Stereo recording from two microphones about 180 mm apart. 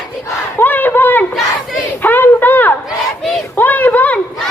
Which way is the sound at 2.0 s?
10° left (ahead or behind).